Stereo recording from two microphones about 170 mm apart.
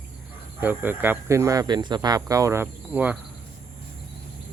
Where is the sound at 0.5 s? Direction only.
10° right (ahead or behind).